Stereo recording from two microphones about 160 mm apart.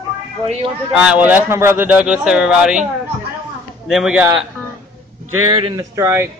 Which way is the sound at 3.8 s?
5° right (ahead or behind).